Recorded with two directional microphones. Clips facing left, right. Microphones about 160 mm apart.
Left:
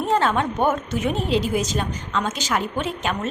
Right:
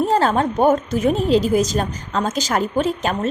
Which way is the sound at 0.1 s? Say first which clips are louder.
Right 3 dB; 35° right (ahead or behind).